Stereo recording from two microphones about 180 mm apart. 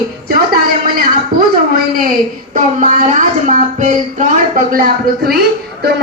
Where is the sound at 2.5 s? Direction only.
40° right (ahead or behind).